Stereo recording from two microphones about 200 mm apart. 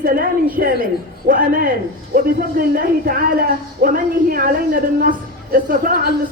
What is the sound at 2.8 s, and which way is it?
Speech, 45° right (ahead or behind).